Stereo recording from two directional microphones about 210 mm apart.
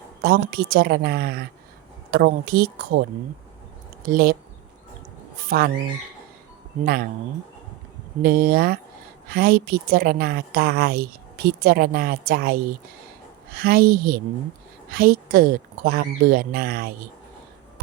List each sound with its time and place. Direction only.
0.2 s a woman's voice: 50° right (ahead or behind)
5.5 s a woman's voice: 45° right (ahead or behind)
8.2 s a woman's voice: 45° right (ahead or behind)